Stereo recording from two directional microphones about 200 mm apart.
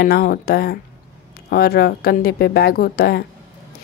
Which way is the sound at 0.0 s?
50° left (ahead or behind).